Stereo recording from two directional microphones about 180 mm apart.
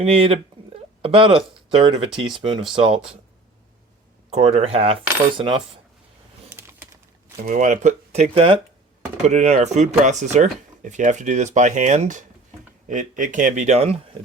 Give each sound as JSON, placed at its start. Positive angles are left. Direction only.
{"t": 0.0, "sound": "speech", "side_deg": -30}
{"t": 4.3, "sound": "speech", "side_deg": -35}
{"t": 5.4, "sound": "coin", "side_deg": -30}
{"t": 6.6, "sound": "typing", "side_deg": -15}
{"t": 7.4, "sound": "speech", "side_deg": -40}